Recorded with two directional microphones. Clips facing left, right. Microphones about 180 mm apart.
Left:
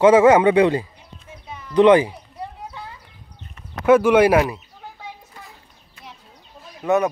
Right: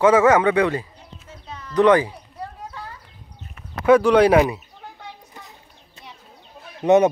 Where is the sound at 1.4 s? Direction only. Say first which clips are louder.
Left 3 dB; 15° left (ahead or behind).